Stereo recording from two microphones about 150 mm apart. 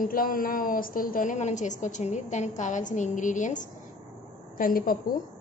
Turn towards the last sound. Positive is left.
turn(degrees=70)  # may be behind; listen again after turning